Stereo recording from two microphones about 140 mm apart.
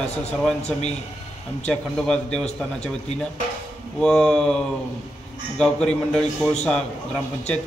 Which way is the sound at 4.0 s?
5° left (ahead or behind).